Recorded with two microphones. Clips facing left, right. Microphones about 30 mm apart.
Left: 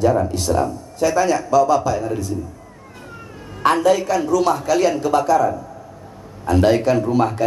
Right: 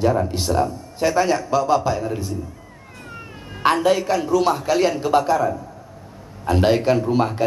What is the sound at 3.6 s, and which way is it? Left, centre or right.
A woman's voice, right.